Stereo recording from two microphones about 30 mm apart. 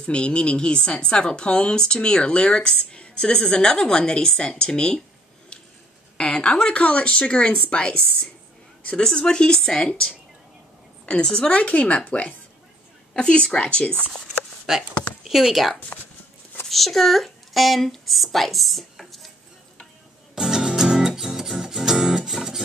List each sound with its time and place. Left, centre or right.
0.0 s a woman's voice: left
6.1 s a woman's voice: left
11.5 s a woman's voice: left
13.1 s speech: left
14.7 s speech: right
15.2 s speech: centre
16.6 s speech: centre
20.3 s music: centre